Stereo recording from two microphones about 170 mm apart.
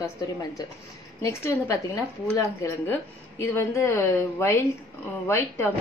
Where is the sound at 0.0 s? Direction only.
20° left (ahead or behind).